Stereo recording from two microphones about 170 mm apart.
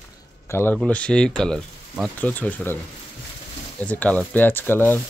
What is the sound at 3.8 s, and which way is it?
Speech, 10° left (ahead or behind).